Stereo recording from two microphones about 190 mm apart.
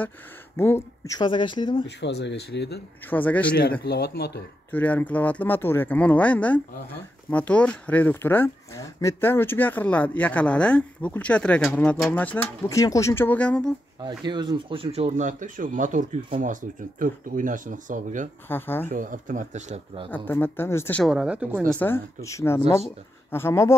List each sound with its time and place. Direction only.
0.6 s speech: 15° left (ahead or behind)
1.9 s speech: 65° left (ahead or behind)
3.1 s speech: 10° left (ahead or behind)
3.8 s speech: 55° left (ahead or behind)
4.6 s speech: 10° left (ahead or behind)
14.0 s speech: 25° right (ahead or behind); by 18.3 s 40° right (ahead or behind)
18.5 s speech: 10° left (ahead or behind)
18.9 s speech: 45° right (ahead or behind)
20.1 s speech: 10° left (ahead or behind)
21.0 s speech: 5° right (ahead or behind)
21.6 s speech: 10° left (ahead or behind)